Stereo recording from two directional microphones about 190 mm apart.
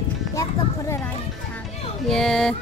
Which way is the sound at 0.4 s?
15° left (ahead or behind).